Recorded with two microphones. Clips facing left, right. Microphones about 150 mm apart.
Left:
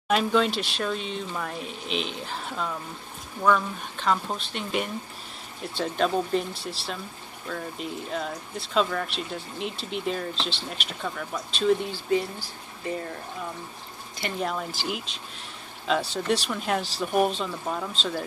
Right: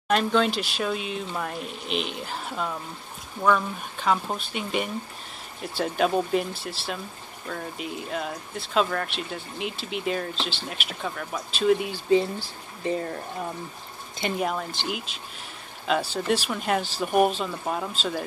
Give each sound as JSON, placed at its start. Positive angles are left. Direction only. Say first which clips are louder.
{"t": 0.1, "sound": "speech", "louder": "even", "side_deg": 0}
{"t": 11.9, "sound": "speech", "louder": "right 4 dB", "side_deg": -25}
{"t": 14.4, "sound": "speech", "louder": "right 1 dB", "side_deg": -5}